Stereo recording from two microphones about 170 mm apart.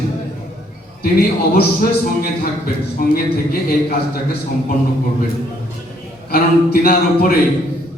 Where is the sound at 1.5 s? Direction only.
65° left (ahead or behind).